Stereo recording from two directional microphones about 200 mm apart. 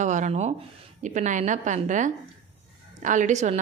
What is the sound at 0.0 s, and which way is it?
A woman's voice, 40° right (ahead or behind).